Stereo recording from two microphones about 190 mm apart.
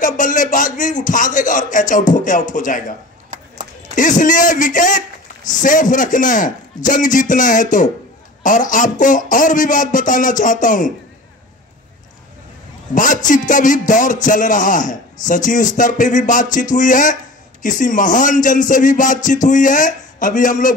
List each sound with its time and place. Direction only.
0.0 s a man's voice: 40° left (ahead or behind)
3.9 s a man's voice: 45° left (ahead or behind)
12.9 s a man's voice: 45° left (ahead or behind)